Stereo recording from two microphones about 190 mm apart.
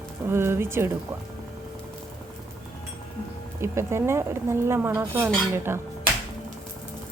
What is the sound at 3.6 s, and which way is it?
Speech, 15° right (ahead or behind).